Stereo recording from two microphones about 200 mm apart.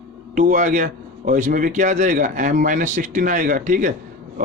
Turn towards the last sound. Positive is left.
turn(degrees=-40)  # may be behind; listen again after turning